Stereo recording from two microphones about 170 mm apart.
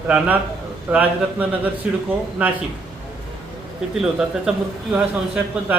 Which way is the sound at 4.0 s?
5° right (ahead or behind).